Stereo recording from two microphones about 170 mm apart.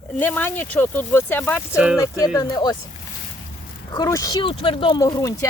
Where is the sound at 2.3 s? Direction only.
25° left (ahead or behind).